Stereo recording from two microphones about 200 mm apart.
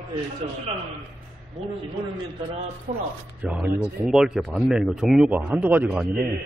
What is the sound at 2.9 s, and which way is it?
Speech, 35° right (ahead or behind).